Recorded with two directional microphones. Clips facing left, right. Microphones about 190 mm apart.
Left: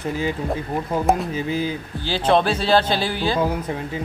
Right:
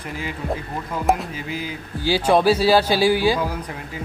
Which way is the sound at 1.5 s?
30° left (ahead or behind).